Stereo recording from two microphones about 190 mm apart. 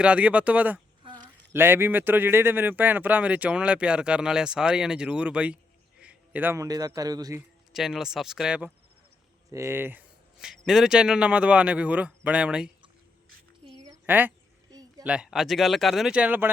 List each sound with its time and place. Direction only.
0.0 s speech: 5° right (ahead or behind)
1.0 s a sound: 20° right (ahead or behind)
1.5 s a man's voice: 10° right (ahead or behind)
7.7 s a man's voice: centre (ahead or behind)
13.8 s a sound: 10° right (ahead or behind)
15.0 s a man's voice: 5° right (ahead or behind)